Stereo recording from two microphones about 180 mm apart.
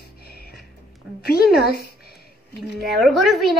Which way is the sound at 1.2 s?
60° left (ahead or behind).